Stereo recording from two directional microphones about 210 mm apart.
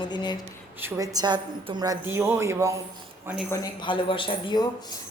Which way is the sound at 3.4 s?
15° left (ahead or behind).